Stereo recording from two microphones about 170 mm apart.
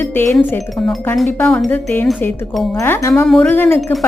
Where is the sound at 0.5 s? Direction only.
10° left (ahead or behind).